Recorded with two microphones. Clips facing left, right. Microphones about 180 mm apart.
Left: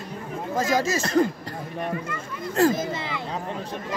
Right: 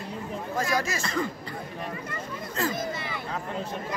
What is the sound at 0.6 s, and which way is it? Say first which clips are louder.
Speech: left 5 dB; 20° left (ahead or behind).